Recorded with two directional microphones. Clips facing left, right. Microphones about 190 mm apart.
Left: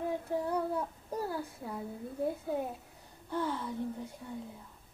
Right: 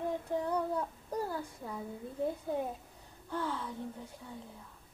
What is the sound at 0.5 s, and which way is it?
Child singing, 5° left (ahead or behind).